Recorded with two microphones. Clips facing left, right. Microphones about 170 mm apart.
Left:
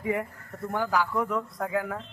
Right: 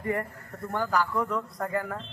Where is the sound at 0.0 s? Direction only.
5° left (ahead or behind).